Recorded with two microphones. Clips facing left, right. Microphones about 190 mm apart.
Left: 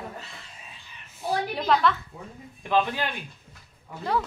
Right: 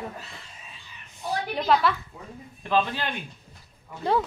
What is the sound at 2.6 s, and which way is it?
Speech, 15° left (ahead or behind).